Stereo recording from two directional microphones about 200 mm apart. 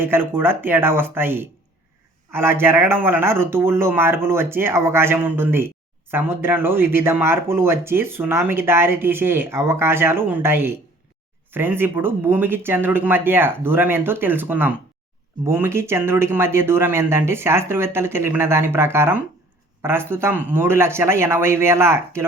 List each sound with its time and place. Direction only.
0.0 s speech: 10° right (ahead or behind)